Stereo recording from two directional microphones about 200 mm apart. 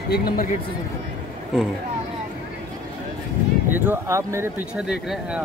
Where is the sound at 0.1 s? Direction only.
50° left (ahead or behind).